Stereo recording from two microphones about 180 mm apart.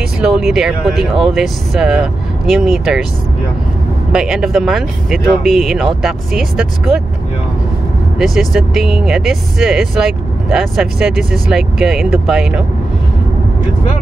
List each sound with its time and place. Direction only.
0.2 s speech: centre (ahead or behind)
4.1 s speech: 5° right (ahead or behind)
8.2 s speech: centre (ahead or behind)